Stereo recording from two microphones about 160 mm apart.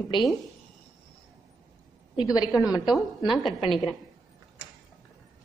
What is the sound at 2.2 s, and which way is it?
Speech, 25° left (ahead or behind).